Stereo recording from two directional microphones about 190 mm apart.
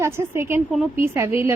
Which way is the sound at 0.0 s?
15° right (ahead or behind).